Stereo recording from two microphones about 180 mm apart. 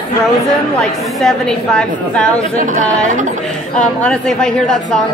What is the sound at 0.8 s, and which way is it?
A woman's voice, centre (ahead or behind).